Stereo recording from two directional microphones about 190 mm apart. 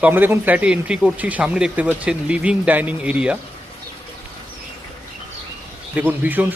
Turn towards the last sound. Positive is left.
turn(degrees=-10)  # may be behind; listen again after turning